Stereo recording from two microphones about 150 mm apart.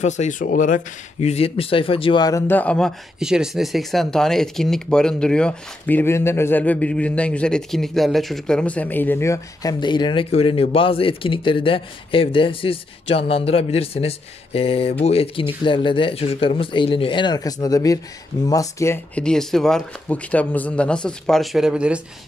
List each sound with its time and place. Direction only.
0.0 s speech: 55° left (ahead or behind); by 2.9 s 10° left (ahead or behind)
3.2 s speech: 5° right (ahead or behind); by 18.9 s 20° left (ahead or behind)
19.1 s speech: 5° left (ahead or behind)